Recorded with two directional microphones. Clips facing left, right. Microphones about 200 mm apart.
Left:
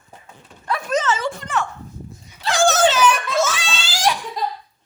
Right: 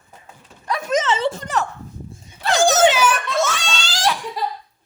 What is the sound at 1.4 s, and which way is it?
Speech, 40° right (ahead or behind).